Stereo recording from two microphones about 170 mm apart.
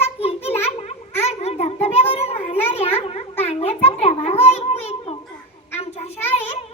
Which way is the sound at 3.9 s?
35° left (ahead or behind).